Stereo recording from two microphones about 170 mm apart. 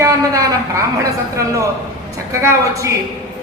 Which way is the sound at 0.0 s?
20° right (ahead or behind).